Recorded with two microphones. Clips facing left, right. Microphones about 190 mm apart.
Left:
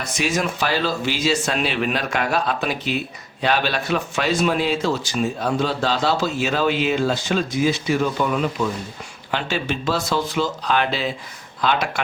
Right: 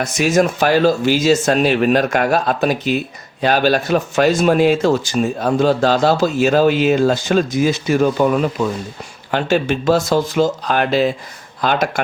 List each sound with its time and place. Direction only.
0.0 s speech: 45° right (ahead or behind)